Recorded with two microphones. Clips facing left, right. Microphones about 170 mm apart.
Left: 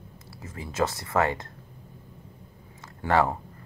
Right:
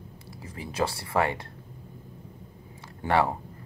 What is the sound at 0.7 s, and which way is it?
Speech, 15° right (ahead or behind).